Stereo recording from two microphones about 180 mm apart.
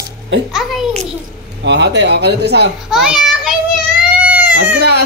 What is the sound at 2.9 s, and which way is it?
Speech, centre (ahead or behind).